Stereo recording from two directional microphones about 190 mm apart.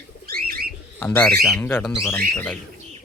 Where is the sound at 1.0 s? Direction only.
10° left (ahead or behind).